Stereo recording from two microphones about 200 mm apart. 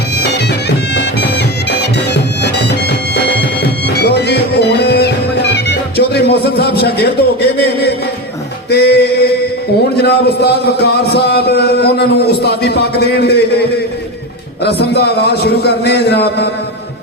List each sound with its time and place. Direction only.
1.8 s music: 55° left (ahead or behind)
10.0 s a man's voice: 55° left (ahead or behind)